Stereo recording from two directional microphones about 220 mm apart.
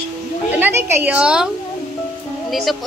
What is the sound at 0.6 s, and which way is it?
Speech, 10° right (ahead or behind).